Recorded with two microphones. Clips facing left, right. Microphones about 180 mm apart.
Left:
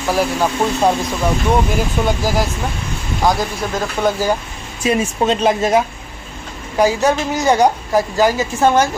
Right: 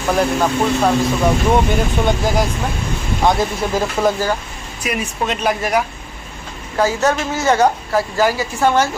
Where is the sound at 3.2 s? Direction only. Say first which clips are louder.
Right 1 dB; centre (ahead or behind).